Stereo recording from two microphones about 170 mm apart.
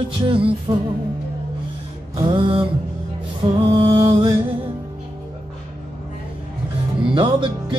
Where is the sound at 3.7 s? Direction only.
30° right (ahead or behind).